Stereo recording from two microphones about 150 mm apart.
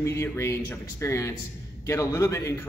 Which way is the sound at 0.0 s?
20° left (ahead or behind).